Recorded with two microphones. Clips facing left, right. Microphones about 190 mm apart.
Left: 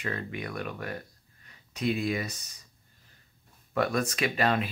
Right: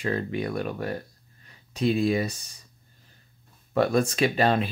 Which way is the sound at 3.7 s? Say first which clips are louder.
Right 5 dB; 30° right (ahead or behind).